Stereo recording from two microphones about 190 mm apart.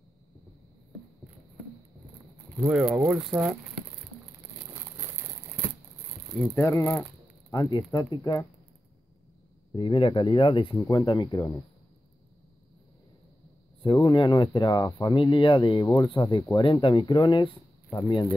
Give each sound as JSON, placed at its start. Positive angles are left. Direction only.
{"t": 2.7, "sound": "speech", "side_deg": -5}
{"t": 6.4, "sound": "speech", "side_deg": 10}
{"t": 9.8, "sound": "speech", "side_deg": 25}
{"t": 13.8, "sound": "speech", "side_deg": 25}